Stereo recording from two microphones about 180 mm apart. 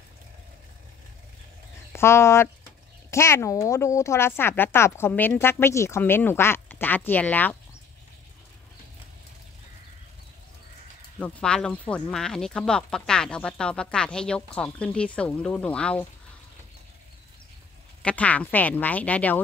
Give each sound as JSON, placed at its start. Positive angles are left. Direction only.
{"t": 1.9, "sound": "a woman's voice", "side_deg": 15}
{"t": 11.1, "sound": "speech", "side_deg": 5}
{"t": 18.0, "sound": "a woman's voice", "side_deg": 10}